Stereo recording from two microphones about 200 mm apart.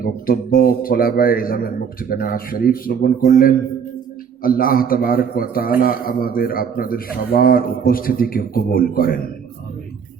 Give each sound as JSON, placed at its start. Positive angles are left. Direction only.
{"t": 0.0, "sound": "speech", "side_deg": 45}
{"t": 4.4, "sound": "speech", "side_deg": 45}